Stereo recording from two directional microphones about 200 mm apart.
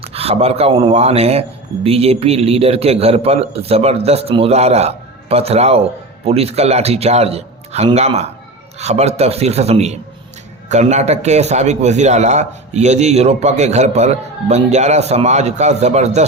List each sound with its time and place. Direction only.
0.0 s speech: 30° right (ahead or behind)